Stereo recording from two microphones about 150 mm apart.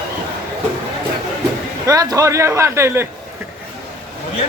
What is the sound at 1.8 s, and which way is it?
A man's voice, 25° right (ahead or behind).